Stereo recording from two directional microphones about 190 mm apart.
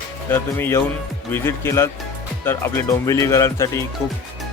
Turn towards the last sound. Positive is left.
turn(degrees=15)  # may be behind; listen again after turning